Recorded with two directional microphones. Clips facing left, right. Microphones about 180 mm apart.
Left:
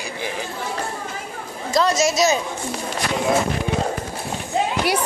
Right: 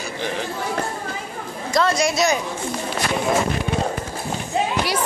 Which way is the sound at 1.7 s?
20° left (ahead or behind).